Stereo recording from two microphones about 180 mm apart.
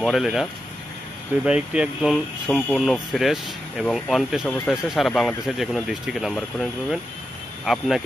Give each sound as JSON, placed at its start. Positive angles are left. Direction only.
{"t": 0.0, "sound": "speech", "side_deg": 0}